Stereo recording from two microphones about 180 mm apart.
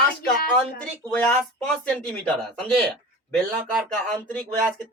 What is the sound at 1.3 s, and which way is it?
Speech, 5° left (ahead or behind).